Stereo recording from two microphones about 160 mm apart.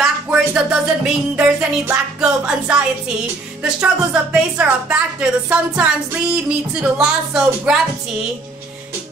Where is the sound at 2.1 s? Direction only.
5° right (ahead or behind).